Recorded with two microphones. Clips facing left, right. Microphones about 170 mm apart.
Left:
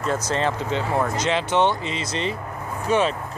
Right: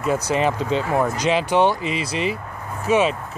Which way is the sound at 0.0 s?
10° right (ahead or behind).